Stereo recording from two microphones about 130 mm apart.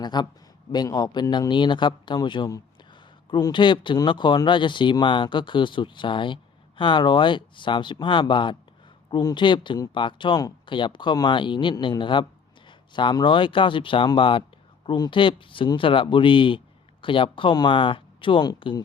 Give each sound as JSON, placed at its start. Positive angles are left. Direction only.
{"t": 0.0, "sound": "speech", "side_deg": 35}